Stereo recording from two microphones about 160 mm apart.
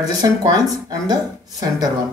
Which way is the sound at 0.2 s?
20° right (ahead or behind).